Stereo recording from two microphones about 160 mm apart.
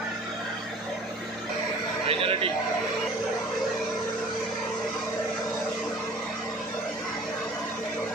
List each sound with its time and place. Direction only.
2.0 s speech: 35° right (ahead or behind)